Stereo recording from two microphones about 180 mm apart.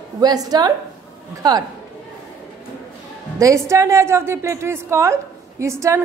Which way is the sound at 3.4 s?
15° right (ahead or behind).